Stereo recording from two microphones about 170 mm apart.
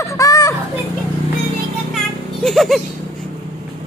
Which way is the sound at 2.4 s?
Centre (ahead or behind).